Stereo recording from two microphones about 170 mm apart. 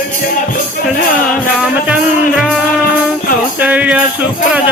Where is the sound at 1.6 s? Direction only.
5° right (ahead or behind).